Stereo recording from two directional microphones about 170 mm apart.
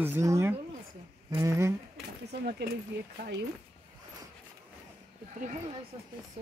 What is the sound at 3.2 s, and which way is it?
Speech, 85° right.